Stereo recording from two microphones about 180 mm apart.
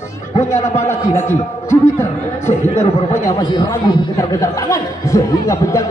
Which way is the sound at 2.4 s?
35° left (ahead or behind).